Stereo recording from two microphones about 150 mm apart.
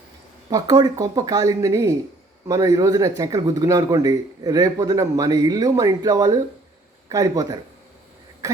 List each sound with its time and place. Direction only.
0.5 s speech: 25° right (ahead or behind)